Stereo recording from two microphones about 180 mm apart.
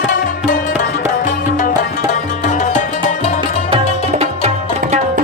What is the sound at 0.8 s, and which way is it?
Music, 45° left (ahead or behind).